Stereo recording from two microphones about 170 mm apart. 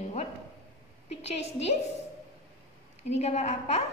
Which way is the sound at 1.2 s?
40° left (ahead or behind).